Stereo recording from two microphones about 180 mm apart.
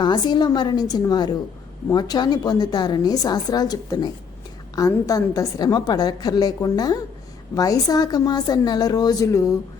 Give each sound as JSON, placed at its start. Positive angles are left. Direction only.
{"t": 0.0, "sound": "a woman's voice", "side_deg": 25}